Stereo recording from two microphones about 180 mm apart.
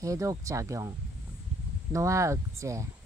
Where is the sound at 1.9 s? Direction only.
15° right (ahead or behind).